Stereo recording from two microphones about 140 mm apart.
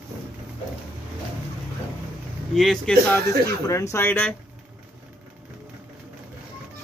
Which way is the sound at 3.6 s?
20° left (ahead or behind).